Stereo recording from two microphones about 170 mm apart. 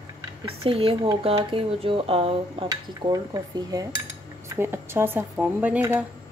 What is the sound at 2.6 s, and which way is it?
Speech, 20° right (ahead or behind).